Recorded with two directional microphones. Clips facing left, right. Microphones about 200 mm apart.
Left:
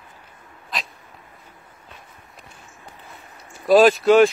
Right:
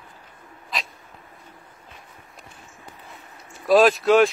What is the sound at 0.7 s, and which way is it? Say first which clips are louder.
Dog: even; centre (ahead or behind).